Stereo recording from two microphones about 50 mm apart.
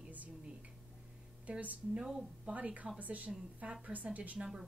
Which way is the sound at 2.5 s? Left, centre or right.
Right.